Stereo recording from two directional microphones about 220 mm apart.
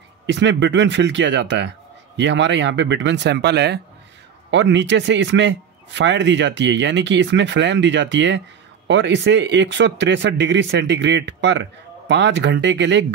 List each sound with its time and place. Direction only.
0.3 s a man's voice: 55° right (ahead or behind)